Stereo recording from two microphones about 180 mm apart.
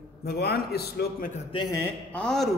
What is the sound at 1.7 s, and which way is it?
Speech, 10° left (ahead or behind).